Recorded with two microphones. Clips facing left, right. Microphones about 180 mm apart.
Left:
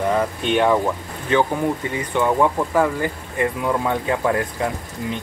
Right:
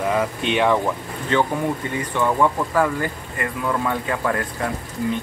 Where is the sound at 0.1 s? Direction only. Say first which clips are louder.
Left 2 dB; centre (ahead or behind).